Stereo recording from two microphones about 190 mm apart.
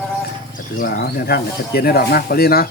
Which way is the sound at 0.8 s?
55° left (ahead or behind).